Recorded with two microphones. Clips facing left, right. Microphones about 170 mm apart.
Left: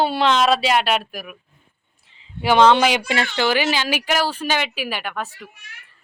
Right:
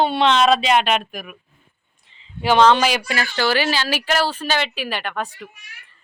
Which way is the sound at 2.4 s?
15° left (ahead or behind).